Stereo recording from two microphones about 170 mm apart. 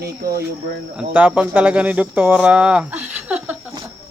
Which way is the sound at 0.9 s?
10° right (ahead or behind).